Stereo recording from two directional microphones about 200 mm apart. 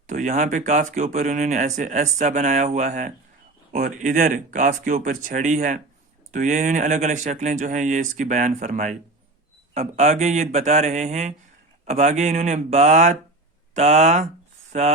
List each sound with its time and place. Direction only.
0.1 s speech: 35° right (ahead or behind)